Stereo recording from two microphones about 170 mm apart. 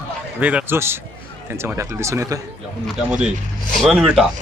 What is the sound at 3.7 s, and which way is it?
Speech, centre (ahead or behind).